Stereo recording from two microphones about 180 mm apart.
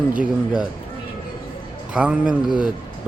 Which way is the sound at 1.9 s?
5° right (ahead or behind).